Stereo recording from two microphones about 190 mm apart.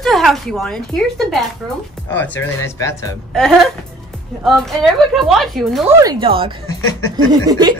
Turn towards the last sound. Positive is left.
turn(degrees=-20)  # may be behind; listen again after turning